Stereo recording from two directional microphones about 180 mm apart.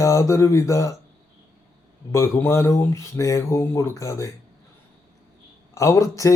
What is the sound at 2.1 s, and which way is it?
Mantra, 15° left (ahead or behind).